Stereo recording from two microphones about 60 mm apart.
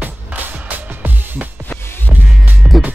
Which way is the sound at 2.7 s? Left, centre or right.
Centre.